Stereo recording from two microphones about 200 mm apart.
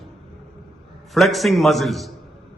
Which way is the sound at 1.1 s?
Centre (ahead or behind).